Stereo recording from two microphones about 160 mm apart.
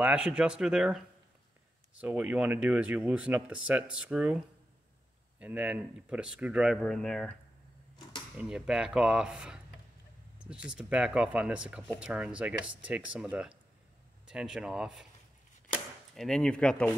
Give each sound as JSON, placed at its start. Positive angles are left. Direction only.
{"t": 0.0, "sound": "speech", "side_deg": -10}
{"t": 5.4, "sound": "speech", "side_deg": -10}
{"t": 8.4, "sound": "speech", "side_deg": -5}
{"t": 16.2, "sound": "speech", "side_deg": 5}